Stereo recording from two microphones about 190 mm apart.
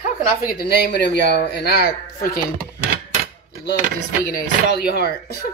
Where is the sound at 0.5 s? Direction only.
60° left (ahead or behind).